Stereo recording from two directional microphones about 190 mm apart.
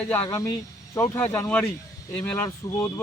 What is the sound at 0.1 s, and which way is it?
Speech, 15° left (ahead or behind).